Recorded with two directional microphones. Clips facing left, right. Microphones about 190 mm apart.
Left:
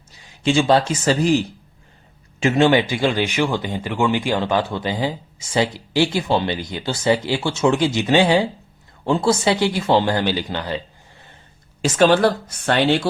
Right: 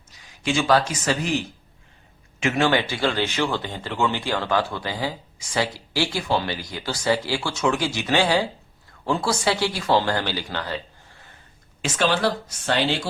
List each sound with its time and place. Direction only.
0.4 s speech: 30° left (ahead or behind)
2.4 s speech: 30° left (ahead or behind)
2.6 s speech: 15° left (ahead or behind)
11.8 s speech: 45° left (ahead or behind)